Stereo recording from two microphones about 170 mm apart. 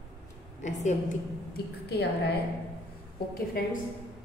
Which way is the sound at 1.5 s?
75° left (ahead or behind).